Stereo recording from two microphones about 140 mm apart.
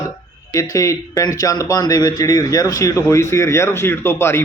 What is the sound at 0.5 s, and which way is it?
Speech, 25° left (ahead or behind).